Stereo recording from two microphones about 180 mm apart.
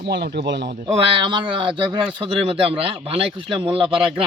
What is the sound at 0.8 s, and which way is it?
Speech, 25° right (ahead or behind).